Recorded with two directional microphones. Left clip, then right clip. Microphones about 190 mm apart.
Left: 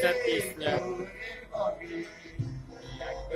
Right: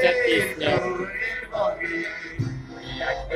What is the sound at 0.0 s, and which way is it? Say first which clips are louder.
Music: right 7 dB; 5° left (ahead or behind).